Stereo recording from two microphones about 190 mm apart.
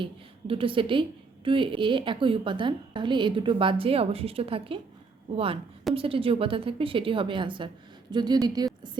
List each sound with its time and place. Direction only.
0.0 s a woman's voice: 30° right (ahead or behind)